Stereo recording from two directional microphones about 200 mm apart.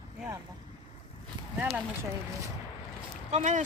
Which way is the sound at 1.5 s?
10° right (ahead or behind).